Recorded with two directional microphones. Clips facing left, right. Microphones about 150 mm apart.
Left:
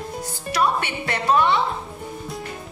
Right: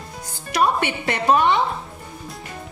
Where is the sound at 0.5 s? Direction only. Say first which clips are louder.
Right 2 dB; 20° right (ahead or behind).